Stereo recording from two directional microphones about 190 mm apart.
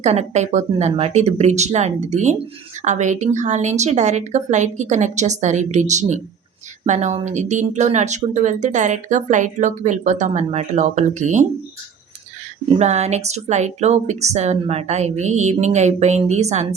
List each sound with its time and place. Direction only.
0.0 s speech: 35° right (ahead or behind)
12.6 s speech: 35° right (ahead or behind)